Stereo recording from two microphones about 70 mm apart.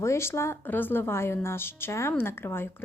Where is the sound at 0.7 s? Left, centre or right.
Left.